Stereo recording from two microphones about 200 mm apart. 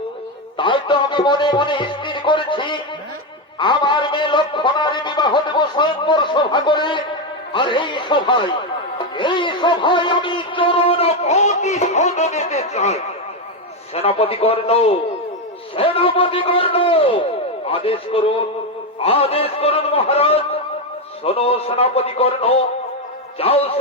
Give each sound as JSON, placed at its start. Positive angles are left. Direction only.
{"t": 0.5, "sound": "a man's voice", "side_deg": 25}
{"t": 15.7, "sound": "a sound", "side_deg": 25}
{"t": 17.7, "sound": "a man's voice", "side_deg": 30}